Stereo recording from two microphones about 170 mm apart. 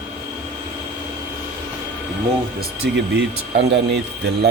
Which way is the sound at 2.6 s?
80° right.